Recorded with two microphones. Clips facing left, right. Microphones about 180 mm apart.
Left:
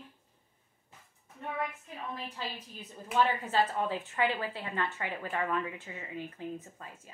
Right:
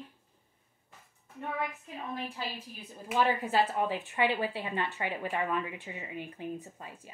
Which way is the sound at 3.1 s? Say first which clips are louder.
Right 1 dB; 10° right (ahead or behind).